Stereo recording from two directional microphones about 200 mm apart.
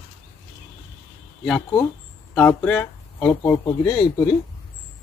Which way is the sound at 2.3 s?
5° left (ahead or behind).